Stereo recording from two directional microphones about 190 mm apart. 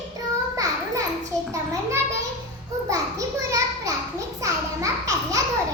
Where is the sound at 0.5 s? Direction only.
20° right (ahead or behind).